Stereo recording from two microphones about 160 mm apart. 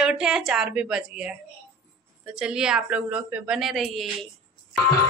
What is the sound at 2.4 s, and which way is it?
Speech, 5° right (ahead or behind).